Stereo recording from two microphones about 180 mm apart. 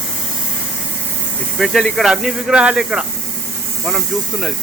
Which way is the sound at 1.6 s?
Centre (ahead or behind).